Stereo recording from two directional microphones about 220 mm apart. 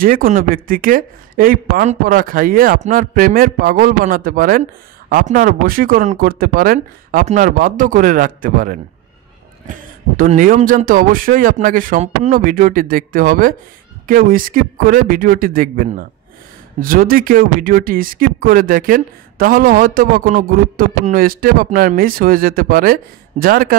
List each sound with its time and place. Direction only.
0.0 s speech: 40° right (ahead or behind)